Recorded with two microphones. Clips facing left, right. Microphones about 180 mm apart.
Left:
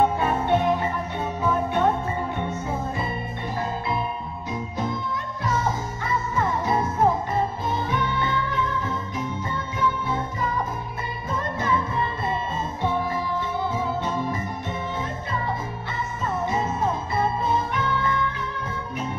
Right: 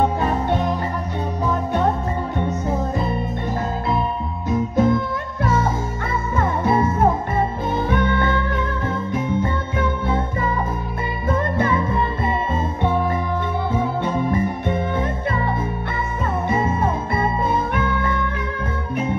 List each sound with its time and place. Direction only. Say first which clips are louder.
0.2 s music: right 1 dB; 40° right (ahead or behind)
4.5 s music: right 11 dB; 50° right (ahead or behind)
16.4 s music: right 4 dB; 55° right (ahead or behind)